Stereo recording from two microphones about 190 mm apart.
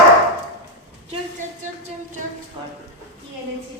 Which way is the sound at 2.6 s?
25° right (ahead or behind).